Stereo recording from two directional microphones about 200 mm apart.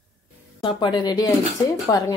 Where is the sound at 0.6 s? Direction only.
20° left (ahead or behind).